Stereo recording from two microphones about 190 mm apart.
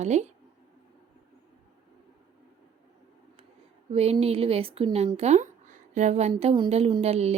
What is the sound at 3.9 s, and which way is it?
Speech, 30° right (ahead or behind).